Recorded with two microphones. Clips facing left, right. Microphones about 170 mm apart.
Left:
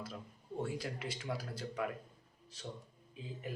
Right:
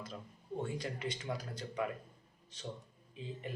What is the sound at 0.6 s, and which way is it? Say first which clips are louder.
Speech: even; 5° left (ahead or behind).